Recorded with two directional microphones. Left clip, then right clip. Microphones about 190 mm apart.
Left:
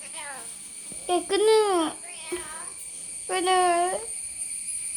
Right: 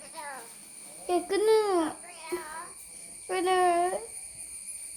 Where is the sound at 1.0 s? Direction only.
15° left (ahead or behind).